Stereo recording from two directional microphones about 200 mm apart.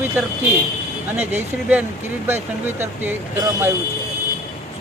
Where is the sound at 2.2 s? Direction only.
10° right (ahead or behind).